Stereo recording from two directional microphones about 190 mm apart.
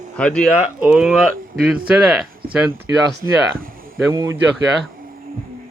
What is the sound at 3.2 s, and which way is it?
Speech, 20° left (ahead or behind).